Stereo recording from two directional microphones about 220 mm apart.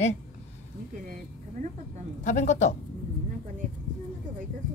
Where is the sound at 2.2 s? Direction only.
35° left (ahead or behind).